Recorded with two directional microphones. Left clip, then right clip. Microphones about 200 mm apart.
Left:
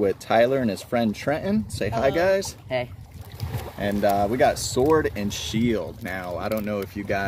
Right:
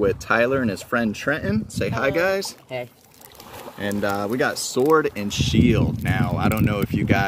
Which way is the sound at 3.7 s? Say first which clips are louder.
Left 3 dB; 30° right (ahead or behind).